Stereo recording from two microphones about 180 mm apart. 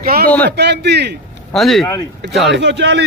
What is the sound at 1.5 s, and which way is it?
Speech, centre (ahead or behind).